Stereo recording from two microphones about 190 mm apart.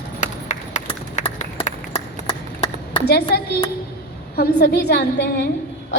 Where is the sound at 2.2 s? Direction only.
25° left (ahead or behind).